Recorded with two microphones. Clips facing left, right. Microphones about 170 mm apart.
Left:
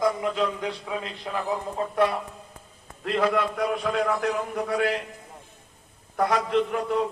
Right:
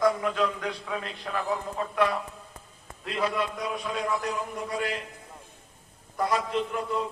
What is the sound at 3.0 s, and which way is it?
A man's voice, 55° left (ahead or behind).